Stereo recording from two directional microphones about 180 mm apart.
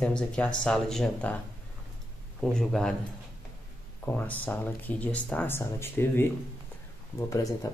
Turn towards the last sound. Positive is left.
turn(degrees=20)  # may be behind; listen again after turning